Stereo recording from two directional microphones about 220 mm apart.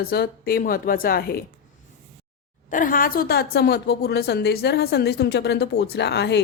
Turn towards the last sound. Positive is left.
turn(degrees=50)  # may be behind; listen again after turning